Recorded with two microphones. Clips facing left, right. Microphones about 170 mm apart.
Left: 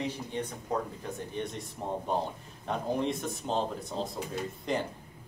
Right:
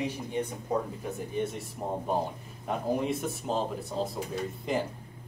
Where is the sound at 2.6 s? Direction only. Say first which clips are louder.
Right 1 dB; 5° right (ahead or behind).